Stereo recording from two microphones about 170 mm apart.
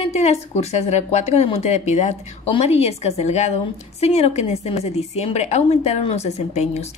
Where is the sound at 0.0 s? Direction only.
40° left (ahead or behind).